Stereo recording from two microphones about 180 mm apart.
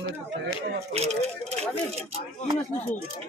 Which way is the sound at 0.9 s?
35° right (ahead or behind).